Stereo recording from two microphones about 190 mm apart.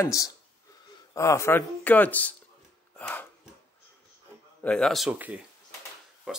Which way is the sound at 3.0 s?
10° left (ahead or behind).